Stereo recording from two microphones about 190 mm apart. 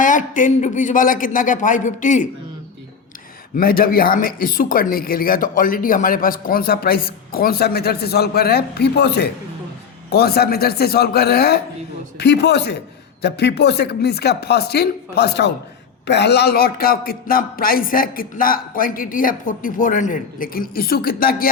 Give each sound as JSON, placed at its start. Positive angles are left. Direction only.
{"t": 0.0, "sound": "speech", "side_deg": 45}
{"t": 3.5, "sound": "speech", "side_deg": 50}